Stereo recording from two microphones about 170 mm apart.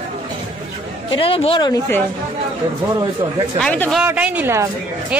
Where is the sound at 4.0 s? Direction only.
10° right (ahead or behind).